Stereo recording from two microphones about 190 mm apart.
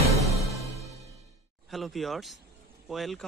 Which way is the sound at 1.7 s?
Centre (ahead or behind).